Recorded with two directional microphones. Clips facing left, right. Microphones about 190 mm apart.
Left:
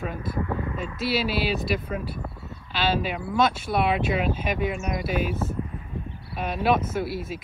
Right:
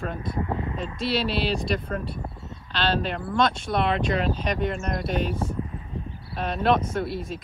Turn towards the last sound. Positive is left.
turn(degrees=5)  # may be behind; listen again after turning